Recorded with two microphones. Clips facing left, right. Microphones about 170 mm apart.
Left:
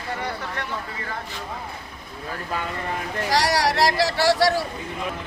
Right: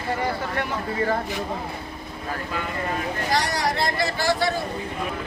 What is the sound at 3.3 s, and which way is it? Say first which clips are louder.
Speech: left 4 dB; 90° left.